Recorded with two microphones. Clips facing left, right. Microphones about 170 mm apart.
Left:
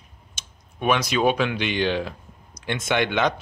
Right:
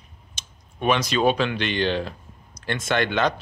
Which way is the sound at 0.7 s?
10° left (ahead or behind).